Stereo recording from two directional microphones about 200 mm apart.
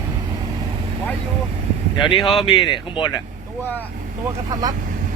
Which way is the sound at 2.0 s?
25° left (ahead or behind).